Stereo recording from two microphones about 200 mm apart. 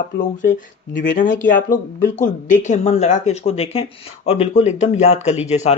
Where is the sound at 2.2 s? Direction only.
40° left (ahead or behind).